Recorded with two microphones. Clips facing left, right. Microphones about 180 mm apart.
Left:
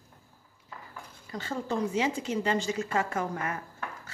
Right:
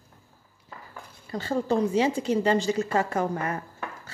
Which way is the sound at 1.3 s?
35° right (ahead or behind).